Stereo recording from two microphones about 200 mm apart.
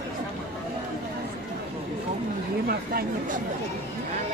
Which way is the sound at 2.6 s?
50° right (ahead or behind).